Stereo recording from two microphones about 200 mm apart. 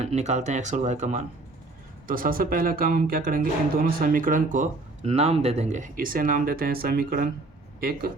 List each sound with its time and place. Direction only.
0.0 s speech: 35° right (ahead or behind); by 8.1 s 50° right (ahead or behind)